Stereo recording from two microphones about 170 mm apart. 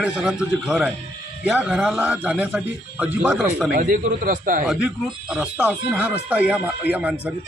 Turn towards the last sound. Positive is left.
turn(degrees=-10)  # may be behind; listen again after turning